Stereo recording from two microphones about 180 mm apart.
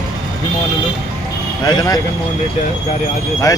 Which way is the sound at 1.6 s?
20° left (ahead or behind).